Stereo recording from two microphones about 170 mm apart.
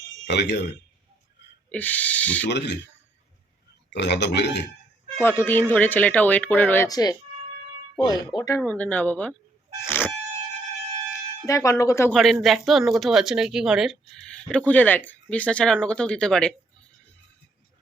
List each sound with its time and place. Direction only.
0.3 s speech: 85° left
1.7 s speech: 10° left (ahead or behind)
2.5 s speech: 85° left
3.9 s speech: 85° left
5.1 s speech: 15° left (ahead or behind)
8.6 s speech: 10° left (ahead or behind)
9.8 s a sound: 15° left (ahead or behind)
11.4 s speech: 20° left (ahead or behind)
12.1 s speech: centre (ahead or behind)